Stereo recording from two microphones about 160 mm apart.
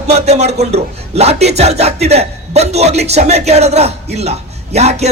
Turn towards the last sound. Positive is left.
turn(degrees=-45)  # may be behind; listen again after turning